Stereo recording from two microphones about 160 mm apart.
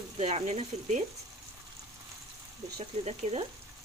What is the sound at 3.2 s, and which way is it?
Speech, 45° right (ahead or behind).